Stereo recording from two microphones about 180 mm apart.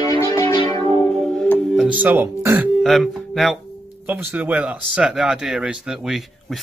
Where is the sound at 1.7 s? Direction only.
10° right (ahead or behind).